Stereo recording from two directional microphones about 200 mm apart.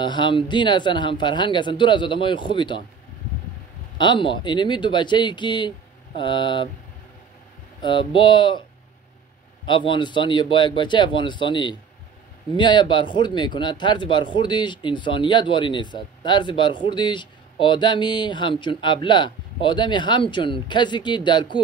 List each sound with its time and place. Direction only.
0.0 s speech: 25° left (ahead or behind)
4.0 s speech: 25° left (ahead or behind)
7.8 s speech: 25° left (ahead or behind)
9.7 s speech: 25° left (ahead or behind)